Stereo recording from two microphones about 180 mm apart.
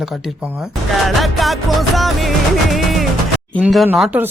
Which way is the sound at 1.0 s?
Centre (ahead or behind).